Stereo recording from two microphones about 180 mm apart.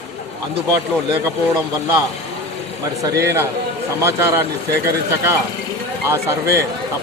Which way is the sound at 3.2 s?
15° right (ahead or behind).